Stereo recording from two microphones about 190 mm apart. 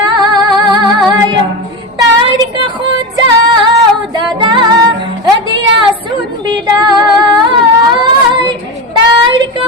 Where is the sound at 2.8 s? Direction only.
25° right (ahead or behind).